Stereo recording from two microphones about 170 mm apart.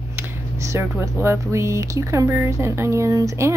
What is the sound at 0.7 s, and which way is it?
A woman's voice, 15° right (ahead or behind).